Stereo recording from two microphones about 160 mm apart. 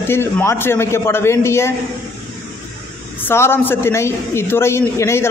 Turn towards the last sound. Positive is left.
turn(degrees=15)  # may be behind; listen again after turning